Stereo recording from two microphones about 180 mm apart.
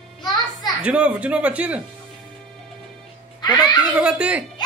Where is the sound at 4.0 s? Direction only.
5° right (ahead or behind).